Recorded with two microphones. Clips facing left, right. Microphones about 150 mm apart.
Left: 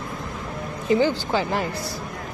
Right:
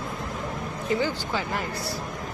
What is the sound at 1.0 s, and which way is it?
Speech, 25° left (ahead or behind).